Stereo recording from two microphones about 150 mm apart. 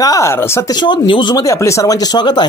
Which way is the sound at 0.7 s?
30° left (ahead or behind).